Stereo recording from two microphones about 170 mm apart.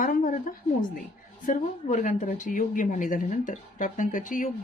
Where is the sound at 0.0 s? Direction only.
50° left (ahead or behind).